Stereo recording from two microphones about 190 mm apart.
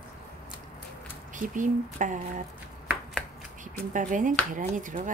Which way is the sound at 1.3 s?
45° right (ahead or behind).